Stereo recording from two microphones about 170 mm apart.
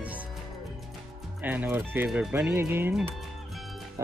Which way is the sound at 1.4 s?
10° right (ahead or behind).